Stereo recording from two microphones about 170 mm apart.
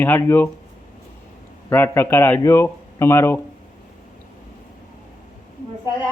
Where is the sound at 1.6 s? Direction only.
15° left (ahead or behind).